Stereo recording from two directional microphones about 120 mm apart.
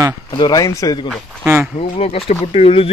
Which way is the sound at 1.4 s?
15° right (ahead or behind).